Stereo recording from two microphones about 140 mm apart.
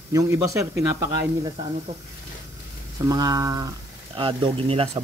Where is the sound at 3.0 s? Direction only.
25° right (ahead or behind).